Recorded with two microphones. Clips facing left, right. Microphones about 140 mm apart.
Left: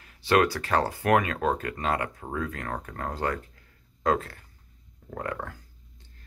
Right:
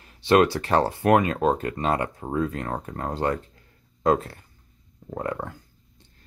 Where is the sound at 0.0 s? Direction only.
25° right (ahead or behind).